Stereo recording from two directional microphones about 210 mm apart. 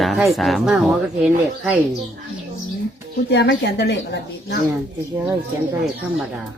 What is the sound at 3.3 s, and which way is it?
Speech, 55° left (ahead or behind).